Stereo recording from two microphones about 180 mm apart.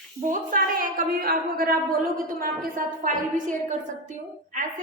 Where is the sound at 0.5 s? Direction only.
50° right (ahead or behind).